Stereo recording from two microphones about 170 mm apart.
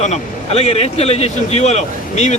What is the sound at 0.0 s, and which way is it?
Speech, 40° left (ahead or behind).